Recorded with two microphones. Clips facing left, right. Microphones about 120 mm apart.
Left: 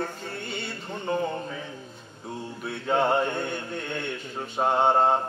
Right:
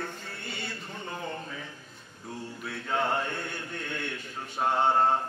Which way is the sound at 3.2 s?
25° left (ahead or behind).